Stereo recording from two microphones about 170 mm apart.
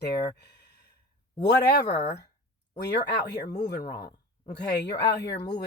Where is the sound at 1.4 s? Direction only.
80° left.